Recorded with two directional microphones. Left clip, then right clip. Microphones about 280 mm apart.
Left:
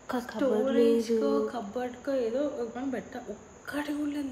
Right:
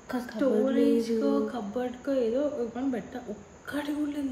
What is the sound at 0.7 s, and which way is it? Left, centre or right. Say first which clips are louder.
Music: left 1 dB; centre.